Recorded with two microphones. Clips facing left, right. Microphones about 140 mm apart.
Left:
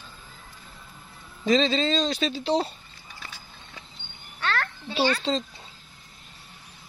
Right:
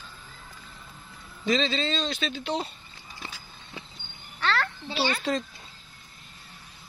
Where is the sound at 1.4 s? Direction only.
35° left (ahead or behind).